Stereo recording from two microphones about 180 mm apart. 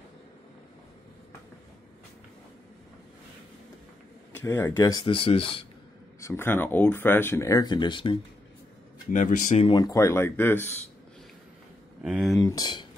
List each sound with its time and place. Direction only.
4.4 s speech: 15° left (ahead or behind); by 5.7 s 30° left (ahead or behind)
6.2 s speech: 10° left (ahead or behind)
9.1 s speech: 45° left (ahead or behind)
9.7 s speech: 20° left (ahead or behind)
12.0 s speech: centre (ahead or behind)
12.4 s speech: 20° left (ahead or behind)